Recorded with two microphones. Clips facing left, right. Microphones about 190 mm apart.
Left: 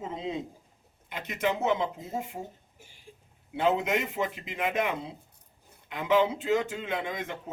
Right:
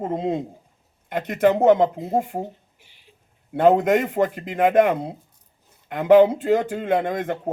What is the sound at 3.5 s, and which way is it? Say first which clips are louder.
Speech: right 10 dB; 50° right (ahead or behind).